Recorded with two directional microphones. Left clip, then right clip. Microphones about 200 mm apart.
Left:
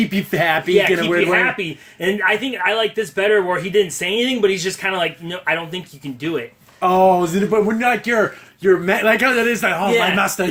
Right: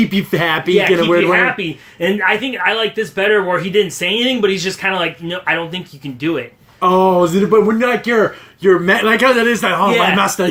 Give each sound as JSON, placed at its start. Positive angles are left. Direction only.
{"t": 0.0, "sound": "speech", "side_deg": 15}